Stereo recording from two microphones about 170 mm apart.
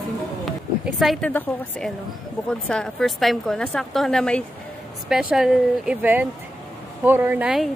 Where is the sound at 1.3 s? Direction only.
10° left (ahead or behind).